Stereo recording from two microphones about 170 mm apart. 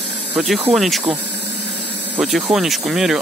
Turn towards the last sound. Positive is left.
turn(degrees=0)  # may be behind; listen again after turning